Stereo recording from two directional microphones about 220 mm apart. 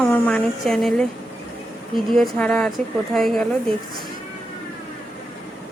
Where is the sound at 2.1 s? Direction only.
5° left (ahead or behind).